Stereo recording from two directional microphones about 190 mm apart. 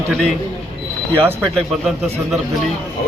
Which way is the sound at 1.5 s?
Centre (ahead or behind).